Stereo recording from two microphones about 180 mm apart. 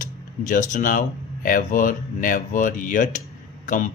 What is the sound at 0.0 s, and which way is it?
Speech, 45° left (ahead or behind).